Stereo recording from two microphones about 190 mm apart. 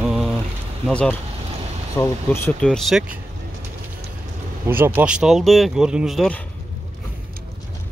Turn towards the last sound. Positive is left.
turn(degrees=5)  # may be behind; listen again after turning